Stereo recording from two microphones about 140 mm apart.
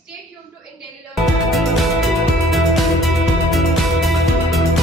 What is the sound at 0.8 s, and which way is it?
Music, centre (ahead or behind).